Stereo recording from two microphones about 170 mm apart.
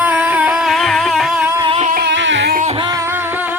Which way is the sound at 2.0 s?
90° right.